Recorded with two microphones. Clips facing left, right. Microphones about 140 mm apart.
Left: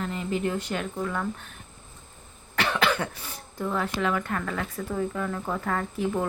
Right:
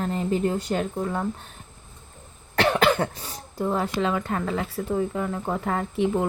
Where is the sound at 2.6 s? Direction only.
45° right (ahead or behind).